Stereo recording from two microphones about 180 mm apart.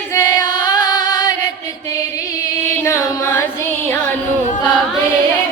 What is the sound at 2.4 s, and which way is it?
Music, 15° left (ahead or behind).